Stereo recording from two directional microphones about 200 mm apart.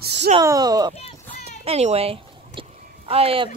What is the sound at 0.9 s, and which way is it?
Run, 30° left (ahead or behind).